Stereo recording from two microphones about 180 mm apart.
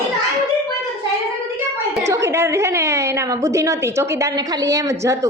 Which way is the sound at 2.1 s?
15° right (ahead or behind).